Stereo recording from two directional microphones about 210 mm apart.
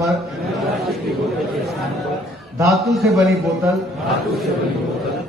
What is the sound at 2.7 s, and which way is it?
Speech, centre (ahead or behind).